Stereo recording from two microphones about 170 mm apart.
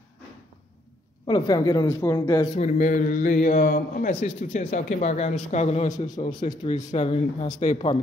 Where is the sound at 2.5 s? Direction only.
45° left (ahead or behind).